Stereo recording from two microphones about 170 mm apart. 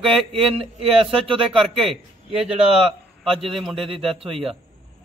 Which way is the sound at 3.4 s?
Centre (ahead or behind).